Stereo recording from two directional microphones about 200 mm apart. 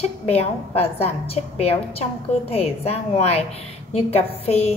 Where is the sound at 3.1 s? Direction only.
30° left (ahead or behind).